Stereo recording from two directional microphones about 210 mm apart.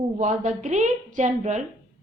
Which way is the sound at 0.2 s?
35° right (ahead or behind).